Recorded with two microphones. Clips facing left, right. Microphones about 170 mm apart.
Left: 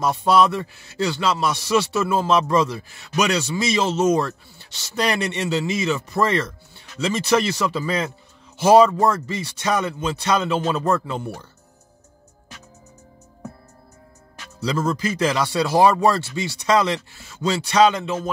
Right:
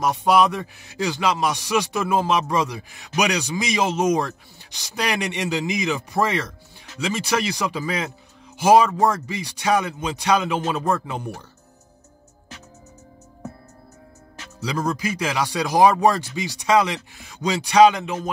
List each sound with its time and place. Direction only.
0.0 s a man's voice: 15° right (ahead or behind)
14.6 s a man's voice: 10° right (ahead or behind)